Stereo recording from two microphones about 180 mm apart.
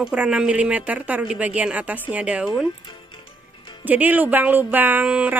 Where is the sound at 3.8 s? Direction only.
10° right (ahead or behind).